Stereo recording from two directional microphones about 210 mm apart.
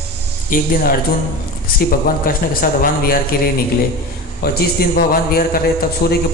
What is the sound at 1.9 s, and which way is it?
A man's voice, 45° left (ahead or behind).